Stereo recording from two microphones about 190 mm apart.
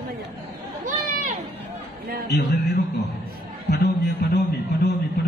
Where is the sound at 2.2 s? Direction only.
60° left (ahead or behind).